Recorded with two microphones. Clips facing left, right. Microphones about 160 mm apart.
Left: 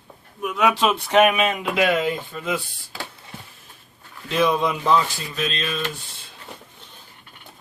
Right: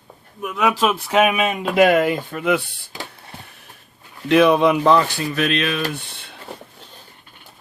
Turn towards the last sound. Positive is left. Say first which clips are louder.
# right 7 dB
turn(degrees=-65)  # may be behind; listen again after turning